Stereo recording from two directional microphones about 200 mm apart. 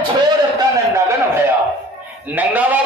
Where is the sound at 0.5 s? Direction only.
15° right (ahead or behind).